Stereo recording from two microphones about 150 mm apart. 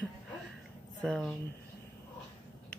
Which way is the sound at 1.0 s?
5° left (ahead or behind).